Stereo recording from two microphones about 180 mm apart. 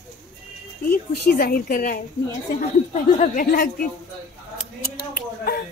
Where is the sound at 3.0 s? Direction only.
45° left (ahead or behind).